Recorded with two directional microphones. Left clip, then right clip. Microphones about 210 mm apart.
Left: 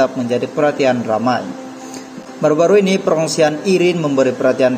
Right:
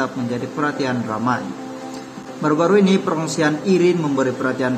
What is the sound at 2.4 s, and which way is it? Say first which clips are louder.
A man's voice: left 4 dB; 15° left (ahead or behind).